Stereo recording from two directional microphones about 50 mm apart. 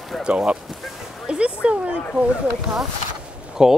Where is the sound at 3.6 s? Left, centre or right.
Centre.